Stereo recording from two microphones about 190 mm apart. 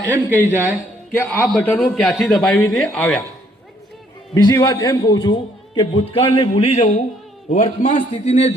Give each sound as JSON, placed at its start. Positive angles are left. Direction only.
{"t": 0.4, "sound": "speech", "side_deg": -10}
{"t": 1.1, "sound": "a man's voice", "side_deg": 10}
{"t": 4.4, "sound": "a man's voice", "side_deg": 20}